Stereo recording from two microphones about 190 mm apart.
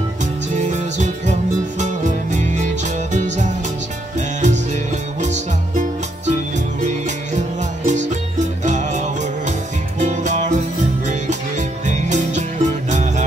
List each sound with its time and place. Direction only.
0.2 s music: 40° right (ahead or behind)
5.2 s music: 40° right (ahead or behind)
7.3 s music: 40° right (ahead or behind)